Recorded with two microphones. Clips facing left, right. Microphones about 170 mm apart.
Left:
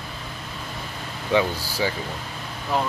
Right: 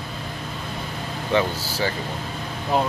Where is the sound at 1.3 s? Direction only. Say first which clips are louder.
Left 1 dB; 15° left (ahead or behind).